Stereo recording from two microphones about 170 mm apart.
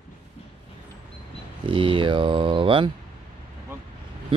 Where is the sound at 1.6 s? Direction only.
30° right (ahead or behind).